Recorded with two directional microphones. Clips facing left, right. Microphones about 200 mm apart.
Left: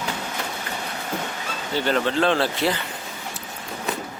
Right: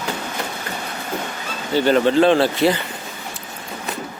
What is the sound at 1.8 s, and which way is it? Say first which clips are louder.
Speech: right 7 dB; 5° right (ahead or behind).